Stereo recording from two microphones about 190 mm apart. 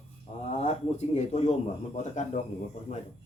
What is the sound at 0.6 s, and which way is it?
A man's voice, 35° left (ahead or behind).